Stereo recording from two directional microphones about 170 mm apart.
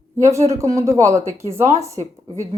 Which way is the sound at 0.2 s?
15° right (ahead or behind).